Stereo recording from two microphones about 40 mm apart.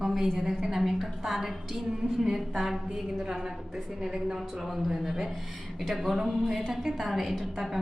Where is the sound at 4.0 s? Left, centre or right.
Centre.